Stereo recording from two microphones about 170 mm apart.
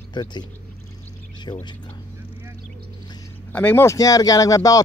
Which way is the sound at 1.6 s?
25° left (ahead or behind).